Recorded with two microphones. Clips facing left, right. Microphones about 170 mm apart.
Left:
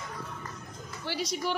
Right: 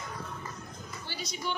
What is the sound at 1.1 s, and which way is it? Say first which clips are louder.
Speech: left 6 dB; 80° left.